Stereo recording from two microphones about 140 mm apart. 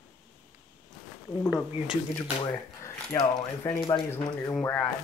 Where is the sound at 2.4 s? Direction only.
20° left (ahead or behind).